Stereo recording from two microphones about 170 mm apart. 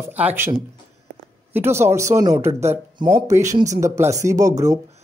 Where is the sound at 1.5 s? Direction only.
15° right (ahead or behind).